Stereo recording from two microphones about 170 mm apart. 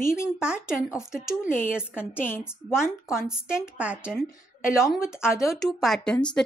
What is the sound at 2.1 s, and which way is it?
Speech, 10° left (ahead or behind).